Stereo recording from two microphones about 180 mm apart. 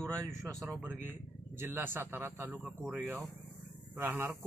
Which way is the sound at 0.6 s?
5° left (ahead or behind).